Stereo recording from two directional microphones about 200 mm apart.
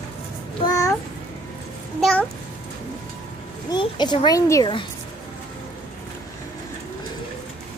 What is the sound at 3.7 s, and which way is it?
A woman's voice, 20° left (ahead or behind).